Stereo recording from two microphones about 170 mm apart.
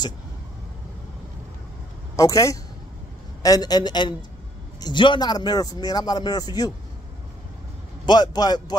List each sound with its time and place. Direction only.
2.1 s a man's voice: 20° left (ahead or behind)
8.0 s a man's voice: 25° left (ahead or behind)